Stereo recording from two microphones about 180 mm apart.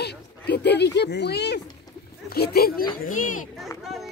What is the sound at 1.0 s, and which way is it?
Speech, 70° left (ahead or behind).